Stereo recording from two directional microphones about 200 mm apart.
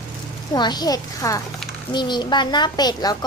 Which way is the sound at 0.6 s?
20° left (ahead or behind).